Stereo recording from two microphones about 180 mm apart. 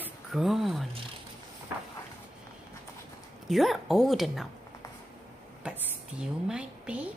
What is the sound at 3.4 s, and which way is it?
Speech, centre (ahead or behind).